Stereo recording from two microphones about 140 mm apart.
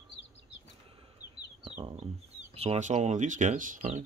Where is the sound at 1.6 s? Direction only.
45° right (ahead or behind).